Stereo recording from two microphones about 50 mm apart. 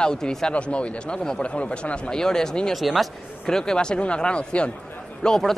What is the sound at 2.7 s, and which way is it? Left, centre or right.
Speech, centre.